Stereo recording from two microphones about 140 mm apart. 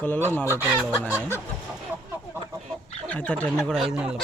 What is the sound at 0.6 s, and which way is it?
Speech, 10° right (ahead or behind).